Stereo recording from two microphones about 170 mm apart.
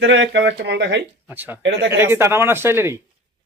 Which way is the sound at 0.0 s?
90° right.